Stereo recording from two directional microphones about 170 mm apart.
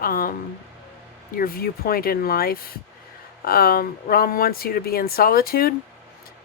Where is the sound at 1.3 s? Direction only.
60° left (ahead or behind).